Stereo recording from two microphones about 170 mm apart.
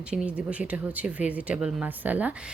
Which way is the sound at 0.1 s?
5° right (ahead or behind).